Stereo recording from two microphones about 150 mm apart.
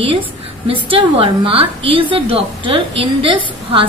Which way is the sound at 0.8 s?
35° right (ahead or behind).